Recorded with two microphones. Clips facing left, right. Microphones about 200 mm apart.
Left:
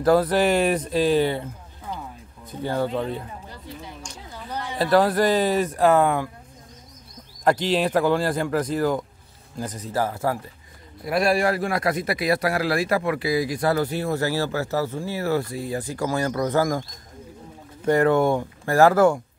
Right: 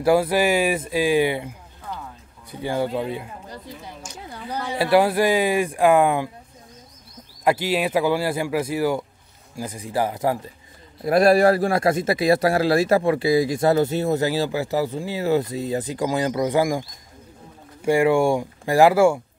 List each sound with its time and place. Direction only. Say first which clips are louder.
0.0 s speech: even; 10° right (ahead or behind)
2.5 s speech: right 1 dB; 10° right (ahead or behind)
4.5 s speech: right 1 dB; 10° right (ahead or behind)
7.4 s speech: even; 10° right (ahead or behind)
11.1 s a man's voice: right 6 dB; 40° right (ahead or behind); by 16.8 s 15° right (ahead or behind)
17.8 s speech: right 1 dB; 10° right (ahead or behind)